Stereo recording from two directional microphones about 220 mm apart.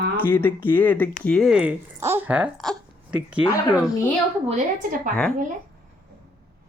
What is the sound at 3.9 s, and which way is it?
Speech, 15° left (ahead or behind).